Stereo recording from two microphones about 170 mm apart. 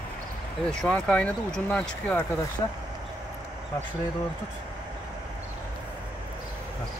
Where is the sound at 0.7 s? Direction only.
5° left (ahead or behind).